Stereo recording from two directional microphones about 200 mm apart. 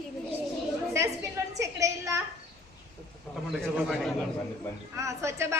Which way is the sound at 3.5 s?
Centre (ahead or behind).